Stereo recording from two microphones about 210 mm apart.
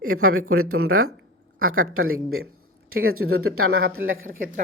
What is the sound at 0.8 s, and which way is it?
Speech, 90° right.